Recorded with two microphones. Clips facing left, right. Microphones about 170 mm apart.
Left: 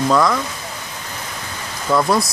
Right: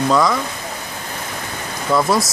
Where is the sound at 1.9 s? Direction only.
Centre (ahead or behind).